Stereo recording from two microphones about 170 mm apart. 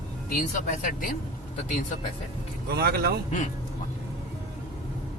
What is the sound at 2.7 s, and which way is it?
Speech, 65° right (ahead or behind).